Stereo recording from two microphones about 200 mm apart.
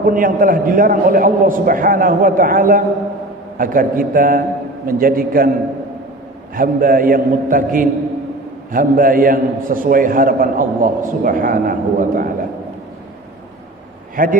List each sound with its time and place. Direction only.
0.0 s a man's voice: 45° right (ahead or behind)
6.5 s a man's voice: 45° right (ahead or behind)
14.2 s a man's voice: 45° right (ahead or behind)